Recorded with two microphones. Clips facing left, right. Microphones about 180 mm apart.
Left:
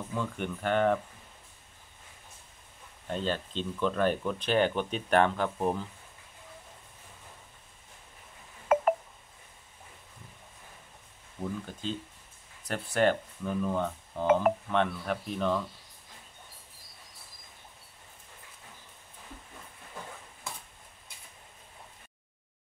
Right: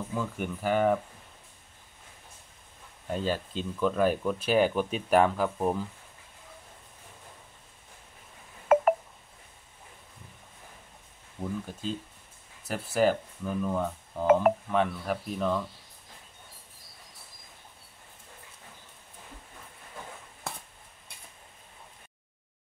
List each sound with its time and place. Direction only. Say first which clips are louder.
0.1 s speech: even; 5° right (ahead or behind)
3.1 s speech: right 2 dB; 5° right (ahead or behind)
8.7 s telephone dialing: right 4 dB; 55° right (ahead or behind)
11.7 s speech: right 1 dB; 10° right (ahead or behind)
20.5 s a sound: right 3 dB; 65° right (ahead or behind)